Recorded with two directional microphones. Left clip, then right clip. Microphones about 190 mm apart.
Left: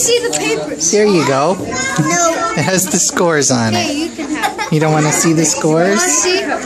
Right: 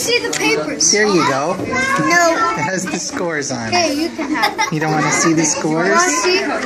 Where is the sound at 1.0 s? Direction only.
50° left (ahead or behind).